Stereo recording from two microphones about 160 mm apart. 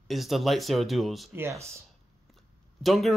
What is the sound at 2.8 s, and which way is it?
Speech, centre (ahead or behind).